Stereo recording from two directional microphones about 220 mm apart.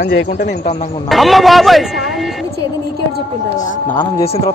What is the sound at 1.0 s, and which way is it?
A man's voice, centre (ahead or behind).